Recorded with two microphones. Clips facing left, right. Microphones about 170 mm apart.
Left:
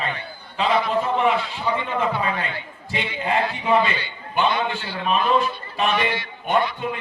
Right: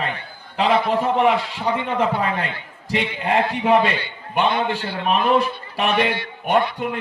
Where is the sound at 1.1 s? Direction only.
75° right (ahead or behind).